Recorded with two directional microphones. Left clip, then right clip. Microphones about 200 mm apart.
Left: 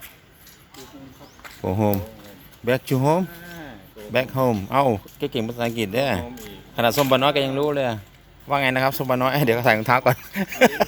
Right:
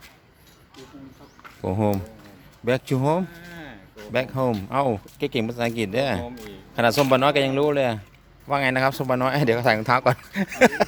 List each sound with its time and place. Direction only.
1.6 s speech: centre (ahead or behind)
3.5 s a sound: 15° right (ahead or behind)
4.1 s speech: centre (ahead or behind)
5.2 s speech: 15° right (ahead or behind)
6.4 s a sound: 20° right (ahead or behind)
7.1 s a man's voice: 15° right (ahead or behind)